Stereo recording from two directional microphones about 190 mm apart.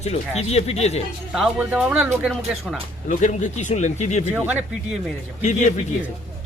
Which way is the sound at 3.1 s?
40° left (ahead or behind).